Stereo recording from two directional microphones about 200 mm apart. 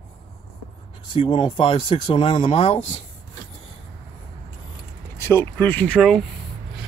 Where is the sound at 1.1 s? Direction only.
25° left (ahead or behind).